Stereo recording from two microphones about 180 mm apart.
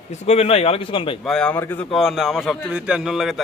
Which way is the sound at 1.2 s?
5° left (ahead or behind).